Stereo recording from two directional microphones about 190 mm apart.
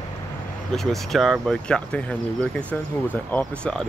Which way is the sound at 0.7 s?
Centre (ahead or behind).